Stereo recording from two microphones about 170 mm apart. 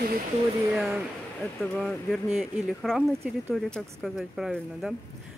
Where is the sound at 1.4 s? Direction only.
Centre (ahead or behind).